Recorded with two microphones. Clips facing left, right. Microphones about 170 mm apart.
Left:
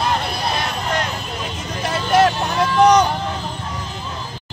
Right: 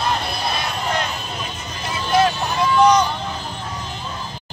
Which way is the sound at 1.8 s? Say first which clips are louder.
Left 2 dB; 75° left (ahead or behind).